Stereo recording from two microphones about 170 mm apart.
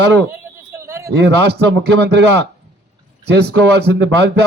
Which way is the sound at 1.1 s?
85° right.